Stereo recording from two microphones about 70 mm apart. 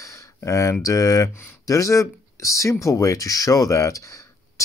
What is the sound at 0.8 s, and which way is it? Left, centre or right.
Speech, left.